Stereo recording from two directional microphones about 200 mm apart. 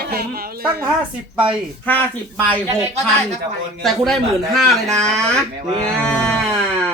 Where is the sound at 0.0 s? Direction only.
50° right (ahead or behind).